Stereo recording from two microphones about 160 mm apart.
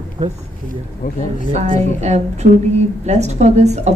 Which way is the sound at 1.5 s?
45° right (ahead or behind).